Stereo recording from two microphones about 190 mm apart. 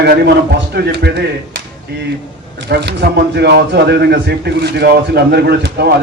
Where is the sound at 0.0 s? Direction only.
60° right (ahead or behind).